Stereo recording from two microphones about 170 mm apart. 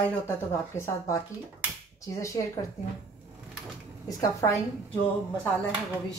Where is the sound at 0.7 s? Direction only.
15° left (ahead or behind).